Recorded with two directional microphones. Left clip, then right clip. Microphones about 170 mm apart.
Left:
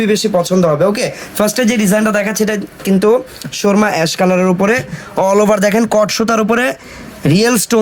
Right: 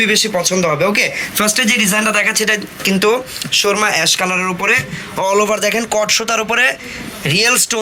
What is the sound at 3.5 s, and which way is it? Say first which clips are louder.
Speech: even; 50° left (ahead or behind).